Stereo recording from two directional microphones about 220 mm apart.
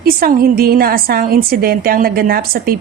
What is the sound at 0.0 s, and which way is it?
A woman's voice, 45° right (ahead or behind).